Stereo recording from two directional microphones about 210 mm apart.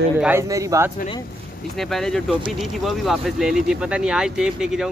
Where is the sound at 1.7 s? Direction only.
Centre (ahead or behind).